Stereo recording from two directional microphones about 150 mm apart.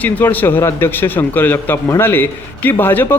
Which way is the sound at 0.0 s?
10° left (ahead or behind).